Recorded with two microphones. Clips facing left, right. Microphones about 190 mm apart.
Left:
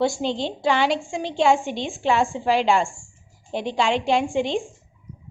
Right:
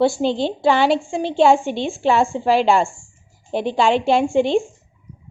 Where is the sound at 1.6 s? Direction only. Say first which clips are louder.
Right 5 dB; centre (ahead or behind).